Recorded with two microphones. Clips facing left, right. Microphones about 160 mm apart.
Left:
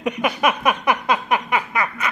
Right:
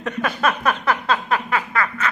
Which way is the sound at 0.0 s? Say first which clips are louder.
Left 2 dB; 15° left (ahead or behind).